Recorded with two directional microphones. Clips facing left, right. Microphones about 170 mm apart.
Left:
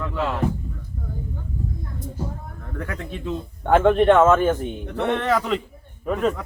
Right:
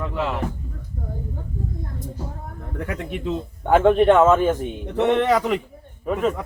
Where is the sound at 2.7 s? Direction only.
20° right (ahead or behind).